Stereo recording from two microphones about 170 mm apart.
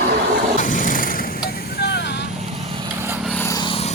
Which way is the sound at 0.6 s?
50° left (ahead or behind).